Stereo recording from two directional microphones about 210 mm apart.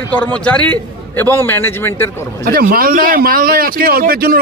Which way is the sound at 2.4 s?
45° right (ahead or behind).